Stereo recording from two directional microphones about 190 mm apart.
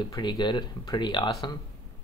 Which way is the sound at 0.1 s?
25° left (ahead or behind).